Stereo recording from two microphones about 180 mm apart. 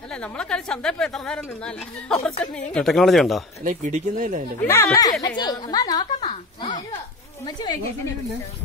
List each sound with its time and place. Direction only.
0.1 s speech: 5° left (ahead or behind)
3.6 s speech: 45° right (ahead or behind)
4.6 s a woman's voice: 15° left (ahead or behind)
6.2 s a woman's voice: 30° left (ahead or behind)